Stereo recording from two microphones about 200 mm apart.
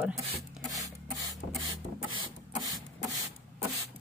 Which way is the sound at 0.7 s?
15° right (ahead or behind).